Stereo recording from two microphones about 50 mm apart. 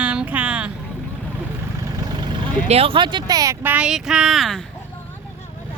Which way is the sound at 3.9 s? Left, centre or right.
Centre.